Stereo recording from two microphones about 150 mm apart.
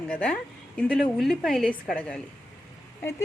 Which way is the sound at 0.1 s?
10° left (ahead or behind).